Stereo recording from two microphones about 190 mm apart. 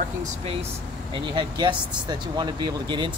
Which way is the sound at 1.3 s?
25° right (ahead or behind).